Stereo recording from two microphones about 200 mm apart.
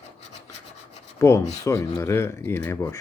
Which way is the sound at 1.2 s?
15° left (ahead or behind).